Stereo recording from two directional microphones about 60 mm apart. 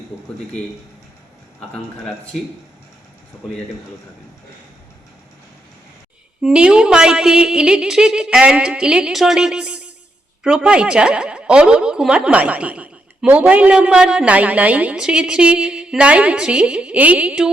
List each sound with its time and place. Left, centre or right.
6.4 s speech: centre
9.6 s a sound: centre
10.4 s a woman's voice: centre
14.9 s speech: centre